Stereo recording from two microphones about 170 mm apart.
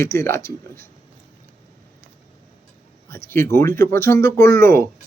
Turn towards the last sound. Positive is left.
turn(degrees=15)  # may be behind; listen again after turning